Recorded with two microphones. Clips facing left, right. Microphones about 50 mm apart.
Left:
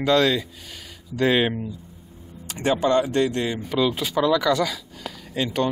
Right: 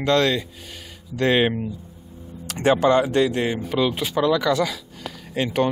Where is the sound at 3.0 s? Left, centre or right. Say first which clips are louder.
Right 2 dB; right.